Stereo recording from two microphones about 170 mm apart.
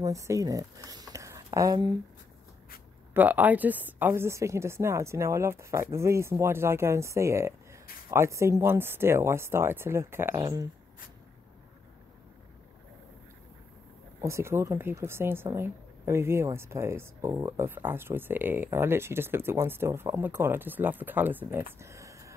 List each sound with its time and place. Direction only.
0.0 s speech: 20° right (ahead or behind)
3.2 s speech: 10° right (ahead or behind)
14.2 s speech: 15° right (ahead or behind)